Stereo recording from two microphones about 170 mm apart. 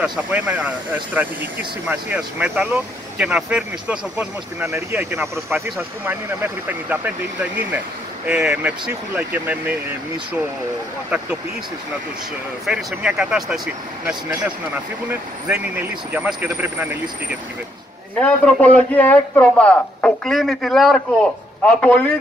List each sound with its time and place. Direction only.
0.0 s speech: 5° right (ahead or behind)
8.3 s speech: 5° right (ahead or behind)
12.6 s speech: 5° right (ahead or behind)
18.2 s a man's voice: 5° left (ahead or behind)